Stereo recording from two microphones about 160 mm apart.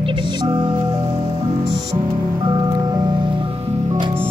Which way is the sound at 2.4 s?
25° right (ahead or behind).